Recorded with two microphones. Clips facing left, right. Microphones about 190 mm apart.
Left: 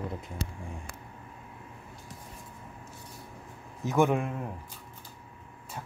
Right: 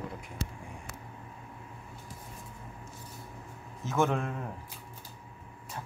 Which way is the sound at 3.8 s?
15° left (ahead or behind).